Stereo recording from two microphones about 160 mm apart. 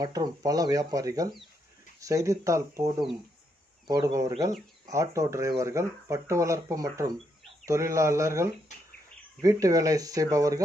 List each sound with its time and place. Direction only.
0.0 s speech: 25° right (ahead or behind)